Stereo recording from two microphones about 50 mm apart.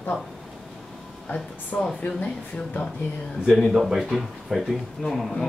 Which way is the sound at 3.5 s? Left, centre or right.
Centre.